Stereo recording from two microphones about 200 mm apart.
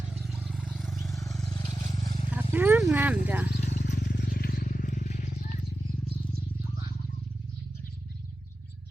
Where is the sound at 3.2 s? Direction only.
10° right (ahead or behind).